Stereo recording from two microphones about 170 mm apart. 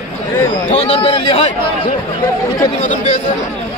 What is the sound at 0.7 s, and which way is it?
Speech, 35° left (ahead or behind).